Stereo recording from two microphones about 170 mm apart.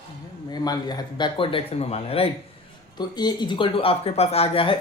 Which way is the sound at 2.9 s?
25° left (ahead or behind).